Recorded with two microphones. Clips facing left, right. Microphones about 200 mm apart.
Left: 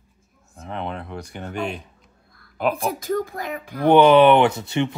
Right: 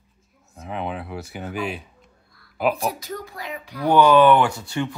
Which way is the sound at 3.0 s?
50° left (ahead or behind).